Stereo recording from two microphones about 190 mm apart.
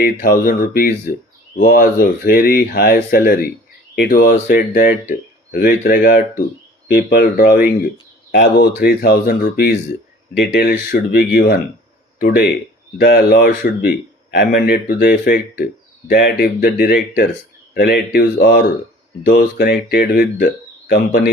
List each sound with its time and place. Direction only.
0.0 s speech: 50° left (ahead or behind)
10.3 s speech: 65° left (ahead or behind)
13.0 s speech: 55° left (ahead or behind)